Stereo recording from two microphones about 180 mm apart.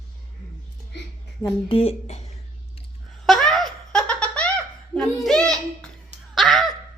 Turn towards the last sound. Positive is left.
turn(degrees=0)  # may be behind; listen again after turning